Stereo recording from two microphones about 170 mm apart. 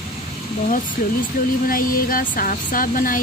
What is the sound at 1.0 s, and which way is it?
Speech, 55° left (ahead or behind).